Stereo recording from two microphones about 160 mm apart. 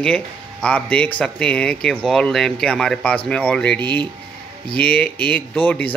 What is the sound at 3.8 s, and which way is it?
Speech, 30° right (ahead or behind).